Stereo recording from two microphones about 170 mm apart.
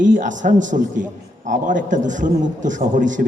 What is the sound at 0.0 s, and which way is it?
A man's voice, 50° right (ahead or behind).